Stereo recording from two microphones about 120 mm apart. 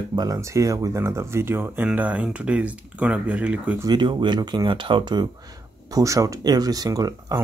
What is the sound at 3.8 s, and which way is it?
Speech, 40° right (ahead or behind).